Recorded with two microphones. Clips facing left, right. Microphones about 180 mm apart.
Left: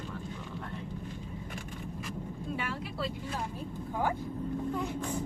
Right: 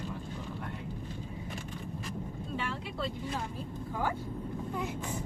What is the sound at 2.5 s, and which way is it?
Vehicle, 5° left (ahead or behind).